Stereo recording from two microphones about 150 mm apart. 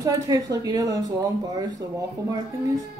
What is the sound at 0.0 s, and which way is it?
Speech, 25° right (ahead or behind).